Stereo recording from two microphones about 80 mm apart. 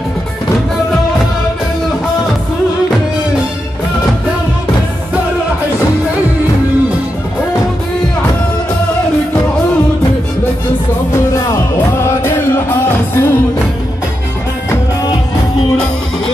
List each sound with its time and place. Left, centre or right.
11.1 s music: left